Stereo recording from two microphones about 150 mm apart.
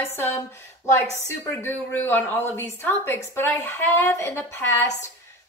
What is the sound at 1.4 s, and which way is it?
A woman's voice, 15° left (ahead or behind).